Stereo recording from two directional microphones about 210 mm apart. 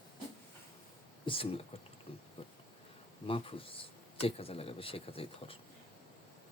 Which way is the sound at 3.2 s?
25° left (ahead or behind).